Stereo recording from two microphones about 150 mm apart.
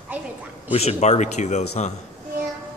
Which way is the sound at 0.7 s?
45° left (ahead or behind).